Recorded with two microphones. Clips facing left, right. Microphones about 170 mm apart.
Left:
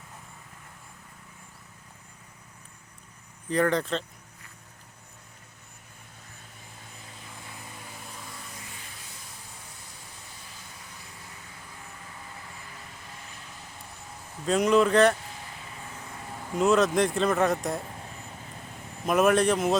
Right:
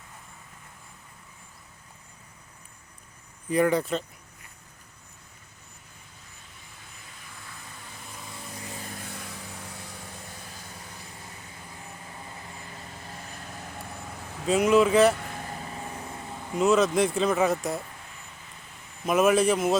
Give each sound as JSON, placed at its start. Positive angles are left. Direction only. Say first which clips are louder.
{"t": 3.5, "sound": "speech", "louder": "right 2 dB", "side_deg": -10}
{"t": 9.0, "sound": "vehicle", "louder": "right 8 dB", "side_deg": -65}
{"t": 12.7, "sound": "vehicle", "louder": "right 4 dB", "side_deg": -40}
{"t": 14.4, "sound": "speech", "louder": "right 1 dB", "side_deg": -5}
{"t": 15.1, "sound": "vehicle", "louder": "right 5 dB", "side_deg": -60}
{"t": 16.6, "sound": "speech", "louder": "right 1 dB", "side_deg": 0}
{"t": 19.0, "sound": "speech", "louder": "right 1 dB", "side_deg": 0}